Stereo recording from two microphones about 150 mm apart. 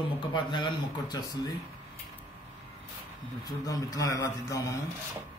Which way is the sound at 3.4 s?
25° left (ahead or behind).